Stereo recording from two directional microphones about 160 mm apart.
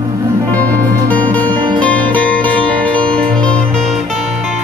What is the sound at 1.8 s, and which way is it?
Music, 10° left (ahead or behind).